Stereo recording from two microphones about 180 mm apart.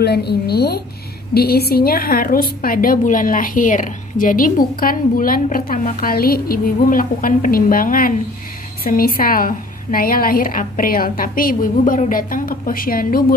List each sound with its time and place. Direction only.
0.0 s a woman's voice: 65° left (ahead or behind)